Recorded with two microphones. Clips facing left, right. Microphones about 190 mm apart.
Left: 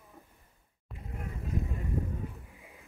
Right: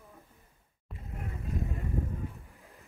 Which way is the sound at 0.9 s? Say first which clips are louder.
Even; centre (ahead or behind).